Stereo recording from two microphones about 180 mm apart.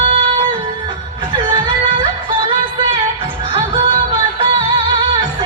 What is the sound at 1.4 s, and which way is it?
Music, 25° right (ahead or behind).